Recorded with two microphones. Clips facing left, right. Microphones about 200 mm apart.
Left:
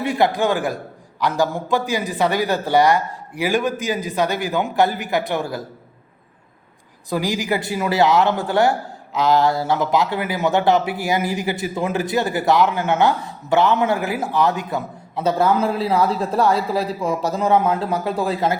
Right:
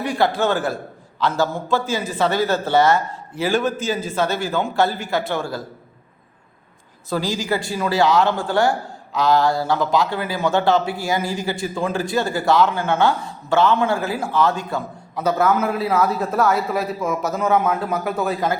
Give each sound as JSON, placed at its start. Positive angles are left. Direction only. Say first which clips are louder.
{"t": 0.0, "sound": "a man's voice", "louder": "left 1 dB", "side_deg": 20}
{"t": 7.1, "sound": "speech", "louder": "left 1 dB", "side_deg": 20}